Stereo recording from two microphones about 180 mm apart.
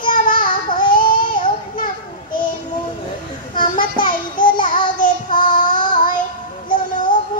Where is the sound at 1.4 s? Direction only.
50° left (ahead or behind).